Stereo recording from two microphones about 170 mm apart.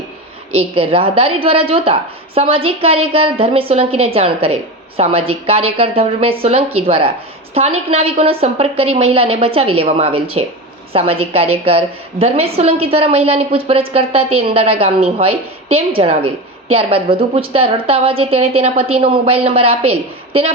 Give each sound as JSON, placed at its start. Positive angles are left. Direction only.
{"t": 0.6, "sound": "a woman's voice", "side_deg": -35}